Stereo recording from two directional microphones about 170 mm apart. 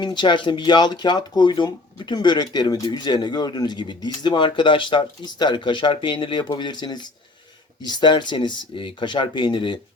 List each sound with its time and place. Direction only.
0.0 s speech: 25° left (ahead or behind)